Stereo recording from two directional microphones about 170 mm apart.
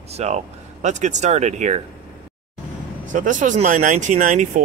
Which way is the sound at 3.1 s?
50° right (ahead or behind).